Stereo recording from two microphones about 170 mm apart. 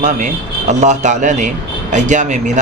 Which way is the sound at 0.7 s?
45° right (ahead or behind).